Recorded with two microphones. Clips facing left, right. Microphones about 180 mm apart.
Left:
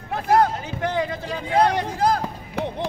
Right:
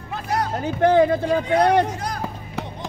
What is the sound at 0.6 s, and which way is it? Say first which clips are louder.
Speech: right 9 dB; 50° right (ahead or behind).